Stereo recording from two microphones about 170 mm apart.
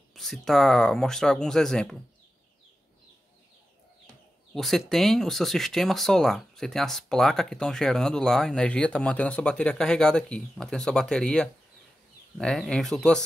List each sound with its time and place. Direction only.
0.1 s speech: centre (ahead or behind)
4.6 s speech: centre (ahead or behind)